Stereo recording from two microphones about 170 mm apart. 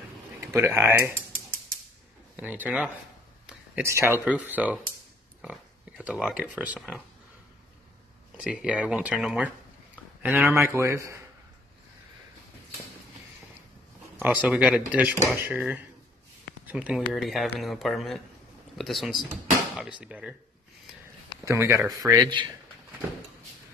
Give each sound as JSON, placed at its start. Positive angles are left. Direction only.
{"t": 0.4, "sound": "speech", "side_deg": -15}
{"t": 2.3, "sound": "a man's voice", "side_deg": -10}
{"t": 3.4, "sound": "a sound", "side_deg": -10}
{"t": 4.5, "sound": "a man's voice", "side_deg": -10}
{"t": 8.4, "sound": "a man's voice", "side_deg": -5}
{"t": 14.2, "sound": "a man's voice", "side_deg": -10}
{"t": 21.5, "sound": "speech", "side_deg": -15}